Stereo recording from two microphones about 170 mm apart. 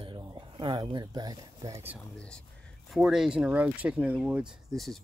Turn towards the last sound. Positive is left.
turn(degrees=0)  # may be behind; listen again after turning